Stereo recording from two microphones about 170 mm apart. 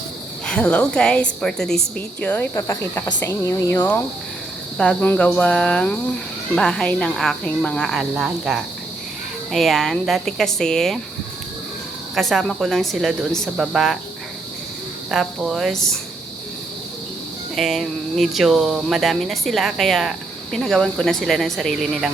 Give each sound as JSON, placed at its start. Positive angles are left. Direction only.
{"t": 0.4, "sound": "speech", "side_deg": 5}
{"t": 2.6, "sound": "speech", "side_deg": 20}
{"t": 12.1, "sound": "speech", "side_deg": 0}
{"t": 15.1, "sound": "speech", "side_deg": 0}
{"t": 17.5, "sound": "speech", "side_deg": 0}